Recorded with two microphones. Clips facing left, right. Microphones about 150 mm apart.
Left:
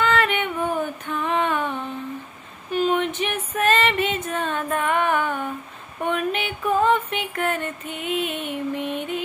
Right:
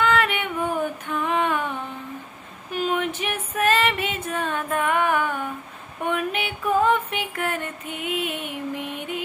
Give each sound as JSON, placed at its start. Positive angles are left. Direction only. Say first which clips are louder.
{"t": 0.0, "sound": "female singing", "louder": "left 1 dB", "side_deg": -10}
{"t": 2.7, "sound": "female singing", "louder": "left 3 dB", "side_deg": -5}
{"t": 6.0, "sound": "a sound", "louder": "left 1 dB", "side_deg": -10}